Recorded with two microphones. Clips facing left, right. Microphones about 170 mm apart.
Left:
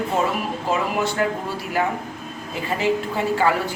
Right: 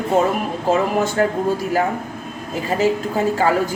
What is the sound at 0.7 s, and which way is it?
A woman's voice, 45° right (ahead or behind).